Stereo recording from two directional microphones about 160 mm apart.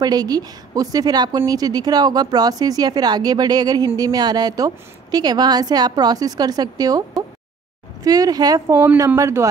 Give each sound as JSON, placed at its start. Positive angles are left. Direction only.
{"t": 0.0, "sound": "a woman's voice", "side_deg": -25}